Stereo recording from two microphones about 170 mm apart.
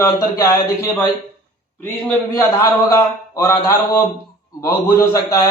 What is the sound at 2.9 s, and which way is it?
A man's voice, 15° left (ahead or behind).